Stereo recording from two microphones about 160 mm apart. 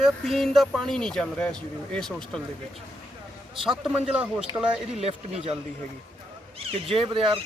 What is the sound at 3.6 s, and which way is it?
Speech, 5° right (ahead or behind).